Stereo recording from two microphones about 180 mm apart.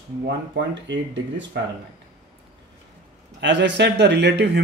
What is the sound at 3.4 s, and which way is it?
A man's voice, 75° right (ahead or behind).